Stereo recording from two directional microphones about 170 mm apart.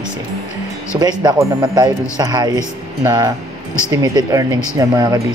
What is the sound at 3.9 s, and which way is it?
Speech, 25° right (ahead or behind).